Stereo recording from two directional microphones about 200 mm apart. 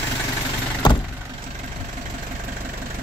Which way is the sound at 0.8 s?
20° left (ahead or behind).